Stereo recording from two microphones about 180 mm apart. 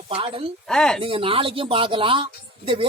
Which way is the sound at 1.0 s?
30° right (ahead or behind).